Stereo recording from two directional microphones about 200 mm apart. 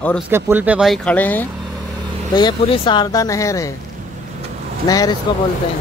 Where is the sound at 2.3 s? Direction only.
20° left (ahead or behind).